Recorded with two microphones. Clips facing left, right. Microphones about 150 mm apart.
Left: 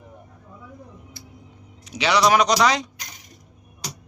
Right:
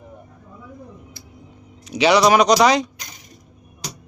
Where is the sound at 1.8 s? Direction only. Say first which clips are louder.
Right 5 dB; 15° right (ahead or behind).